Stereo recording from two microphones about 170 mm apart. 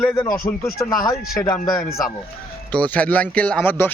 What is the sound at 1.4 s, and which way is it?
Speech, 20° left (ahead or behind).